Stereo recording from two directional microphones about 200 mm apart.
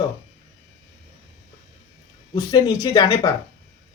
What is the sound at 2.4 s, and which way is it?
Speech, 15° left (ahead or behind).